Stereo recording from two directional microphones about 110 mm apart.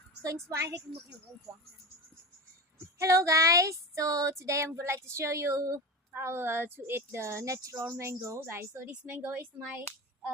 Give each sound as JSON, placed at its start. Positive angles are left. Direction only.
{"t": 0.2, "sound": "female singing", "side_deg": -30}
{"t": 2.7, "sound": "female singing", "side_deg": -25}
{"t": 8.9, "sound": "speech", "side_deg": -15}